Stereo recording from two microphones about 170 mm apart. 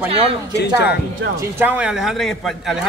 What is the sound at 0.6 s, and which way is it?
Speech, 80° left.